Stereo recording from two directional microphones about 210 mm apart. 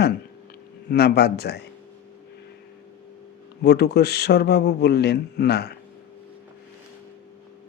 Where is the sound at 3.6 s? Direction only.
50° left (ahead or behind).